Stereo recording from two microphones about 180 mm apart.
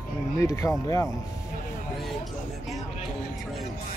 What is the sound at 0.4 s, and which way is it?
Speech, 15° left (ahead or behind).